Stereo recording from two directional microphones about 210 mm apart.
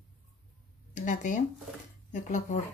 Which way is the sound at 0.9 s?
35° left (ahead or behind).